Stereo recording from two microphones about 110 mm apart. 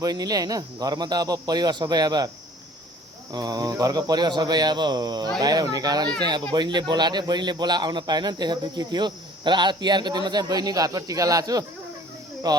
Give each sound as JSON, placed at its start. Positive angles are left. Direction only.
{"t": 0.0, "sound": "speech", "side_deg": -35}
{"t": 3.3, "sound": "speech", "side_deg": -35}